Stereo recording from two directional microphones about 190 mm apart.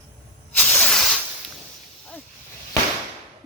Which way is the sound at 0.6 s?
5° left (ahead or behind).